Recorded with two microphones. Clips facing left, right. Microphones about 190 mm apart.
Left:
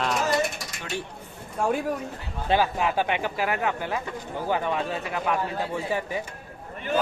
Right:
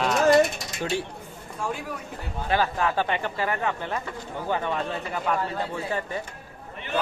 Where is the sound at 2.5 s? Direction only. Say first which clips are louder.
Left 1 dB; 15° left (ahead or behind).